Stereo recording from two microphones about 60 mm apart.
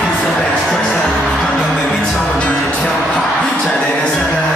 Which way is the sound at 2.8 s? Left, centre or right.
Centre.